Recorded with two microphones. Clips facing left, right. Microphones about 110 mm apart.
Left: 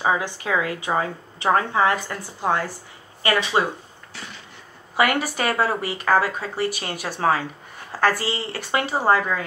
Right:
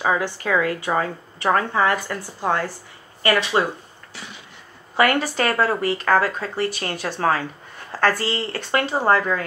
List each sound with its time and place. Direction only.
0.0 s a woman's voice: 15° left (ahead or behind)
4.9 s speech: 15° left (ahead or behind)